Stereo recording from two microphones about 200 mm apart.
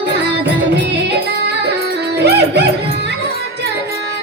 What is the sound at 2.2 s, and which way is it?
Music, 55° right (ahead or behind).